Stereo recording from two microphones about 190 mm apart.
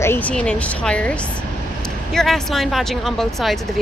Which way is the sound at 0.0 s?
10° left (ahead or behind).